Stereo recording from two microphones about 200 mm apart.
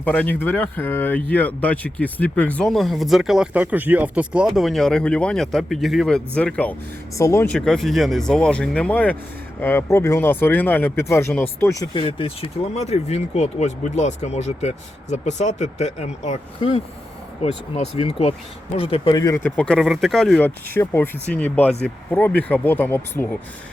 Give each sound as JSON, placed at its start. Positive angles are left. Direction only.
{"t": 0.0, "sound": "speech", "side_deg": 10}
{"t": 7.5, "sound": "speech", "side_deg": 5}
{"t": 19.4, "sound": "speech", "side_deg": 5}